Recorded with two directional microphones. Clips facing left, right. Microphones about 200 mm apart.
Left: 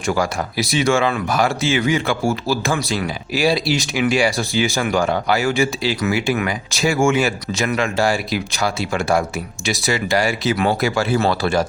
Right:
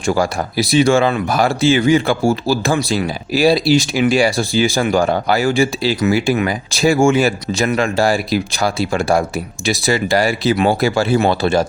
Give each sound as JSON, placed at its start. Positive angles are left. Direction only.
{"t": 0.0, "sound": "speech", "side_deg": -30}